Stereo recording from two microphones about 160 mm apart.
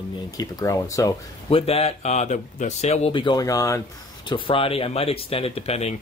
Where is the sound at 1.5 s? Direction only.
40° left (ahead or behind); by 3.8 s 20° left (ahead or behind).